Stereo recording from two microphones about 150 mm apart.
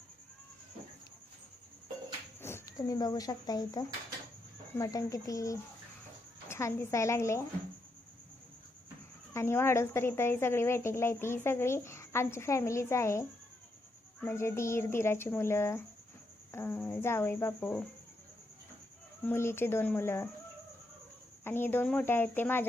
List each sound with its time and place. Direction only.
2.4 s a woman's voice: 15° left (ahead or behind)
9.3 s a woman's voice: 15° left (ahead or behind)
19.2 s a woman's voice: 15° left (ahead or behind)
21.4 s a woman's voice: 15° left (ahead or behind)